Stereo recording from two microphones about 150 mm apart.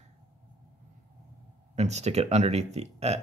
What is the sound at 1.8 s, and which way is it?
Speech, 50° right (ahead or behind).